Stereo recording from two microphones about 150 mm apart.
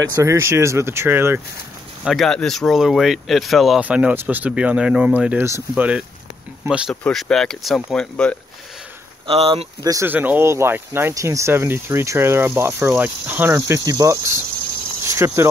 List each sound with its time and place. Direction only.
0.2 s speech: 20° right (ahead or behind)
2.0 s speech: centre (ahead or behind)
6.9 s speech: 5° left (ahead or behind)
9.3 s speech: 40° right (ahead or behind)
9.8 s speech: 15° right (ahead or behind)